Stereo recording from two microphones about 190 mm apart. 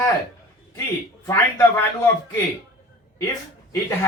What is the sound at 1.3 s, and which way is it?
Speech, 15° left (ahead or behind).